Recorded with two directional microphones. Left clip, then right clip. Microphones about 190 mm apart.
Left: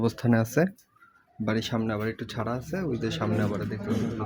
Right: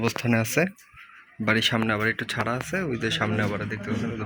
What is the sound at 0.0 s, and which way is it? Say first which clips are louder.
Speech: right 1 dB; 25° left (ahead or behind).